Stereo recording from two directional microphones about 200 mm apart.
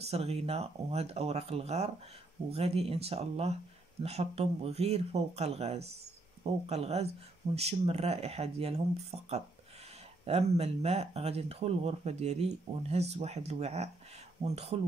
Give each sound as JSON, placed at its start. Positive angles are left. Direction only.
{"t": 0.0, "sound": "speech", "side_deg": -30}